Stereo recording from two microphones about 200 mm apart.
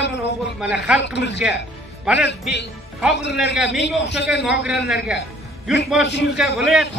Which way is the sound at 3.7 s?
60° left (ahead or behind).